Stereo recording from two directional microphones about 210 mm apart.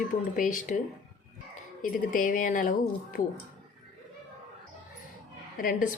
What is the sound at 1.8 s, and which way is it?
Speech, 40° left (ahead or behind).